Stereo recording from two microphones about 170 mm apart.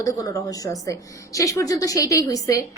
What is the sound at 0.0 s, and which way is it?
A woman's voice, 20° left (ahead or behind).